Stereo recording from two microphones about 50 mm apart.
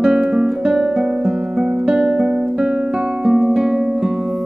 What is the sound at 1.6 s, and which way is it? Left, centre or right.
Guitar, centre.